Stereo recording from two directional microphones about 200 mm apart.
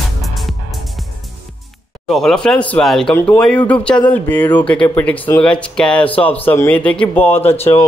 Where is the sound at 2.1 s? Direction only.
Centre (ahead or behind).